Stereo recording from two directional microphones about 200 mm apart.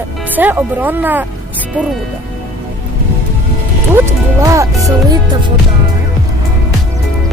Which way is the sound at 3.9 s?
15° right (ahead or behind).